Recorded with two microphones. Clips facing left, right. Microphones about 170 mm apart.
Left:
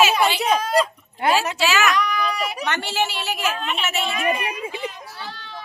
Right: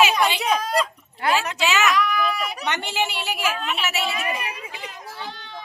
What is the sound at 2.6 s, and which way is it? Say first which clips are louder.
A woman's voice: left 1 dB; 15° right (ahead or behind).